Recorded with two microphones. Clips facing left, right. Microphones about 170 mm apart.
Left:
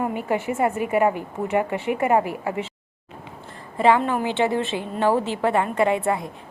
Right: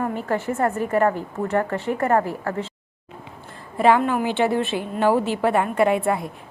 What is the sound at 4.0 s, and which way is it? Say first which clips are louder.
Speech: right 2 dB; 5° right (ahead or behind).